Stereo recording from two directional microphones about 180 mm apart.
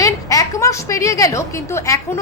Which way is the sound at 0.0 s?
20° left (ahead or behind).